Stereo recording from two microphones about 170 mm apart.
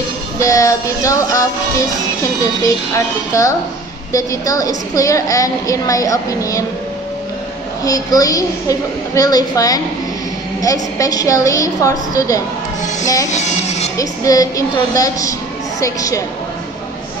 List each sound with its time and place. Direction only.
0.4 s a woman's voice: 20° left (ahead or behind)
7.8 s a woman's voice: 20° left (ahead or behind)
13.3 s music: 40° left (ahead or behind)
13.9 s a woman's voice: 20° left (ahead or behind)